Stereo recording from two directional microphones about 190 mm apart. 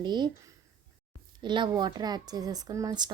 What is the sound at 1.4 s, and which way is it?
A woman's voice, 25° right (ahead or behind).